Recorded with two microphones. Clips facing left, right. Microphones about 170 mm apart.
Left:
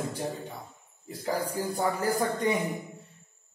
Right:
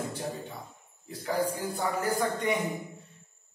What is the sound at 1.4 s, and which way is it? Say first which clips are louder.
Speech: left 2 dB; 35° left (ahead or behind).